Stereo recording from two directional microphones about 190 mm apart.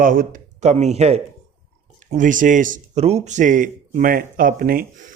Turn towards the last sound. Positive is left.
turn(degrees=-45)  # may be behind; listen again after turning